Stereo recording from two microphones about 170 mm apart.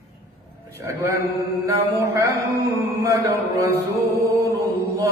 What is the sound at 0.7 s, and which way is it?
A man's voice, 15° right (ahead or behind).